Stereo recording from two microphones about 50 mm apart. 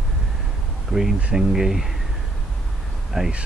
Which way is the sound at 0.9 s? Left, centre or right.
Centre.